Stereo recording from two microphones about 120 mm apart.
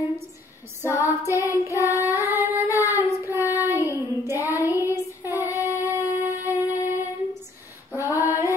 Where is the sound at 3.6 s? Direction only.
25° left (ahead or behind).